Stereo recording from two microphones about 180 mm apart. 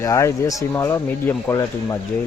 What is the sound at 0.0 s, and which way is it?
Speech, 15° left (ahead or behind).